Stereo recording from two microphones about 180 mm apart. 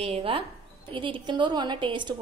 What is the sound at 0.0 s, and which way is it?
A woman's voice, 30° right (ahead or behind).